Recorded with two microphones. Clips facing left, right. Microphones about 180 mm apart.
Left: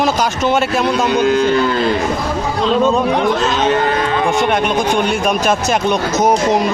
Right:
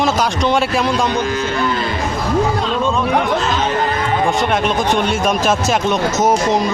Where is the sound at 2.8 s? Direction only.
40° left (ahead or behind).